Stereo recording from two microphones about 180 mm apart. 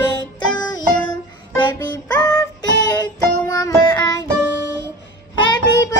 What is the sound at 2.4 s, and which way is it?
Child singing, 20° left (ahead or behind).